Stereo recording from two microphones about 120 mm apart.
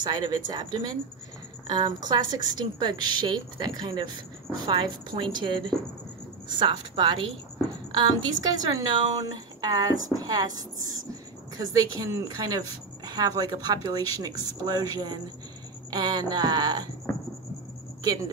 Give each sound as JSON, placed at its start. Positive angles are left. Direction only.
{"t": 0.0, "sound": "a woman's voice", "side_deg": -35}
{"t": 18.0, "sound": "a woman's voice", "side_deg": -35}